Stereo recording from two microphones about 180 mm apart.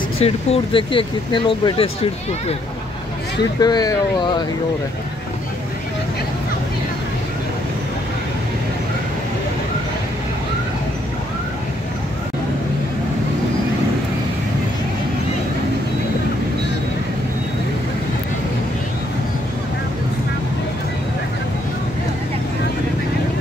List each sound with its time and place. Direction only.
0.2 s speech: 30° left (ahead or behind)
3.6 s speech: 20° left (ahead or behind)